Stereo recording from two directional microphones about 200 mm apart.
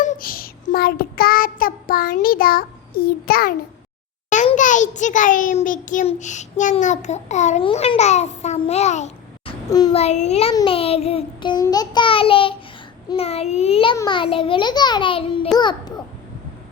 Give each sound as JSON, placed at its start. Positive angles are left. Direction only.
{"t": 0.0, "sound": "child singing", "side_deg": 40}
{"t": 4.3, "sound": "a child's voice", "side_deg": 35}
{"t": 9.6, "sound": "a sound", "side_deg": 20}
{"t": 9.9, "sound": "a child's voice", "side_deg": 35}
{"t": 10.5, "sound": "child singing", "side_deg": 25}
{"t": 13.1, "sound": "a child's voice", "side_deg": 30}
{"t": 13.9, "sound": "child singing", "side_deg": 20}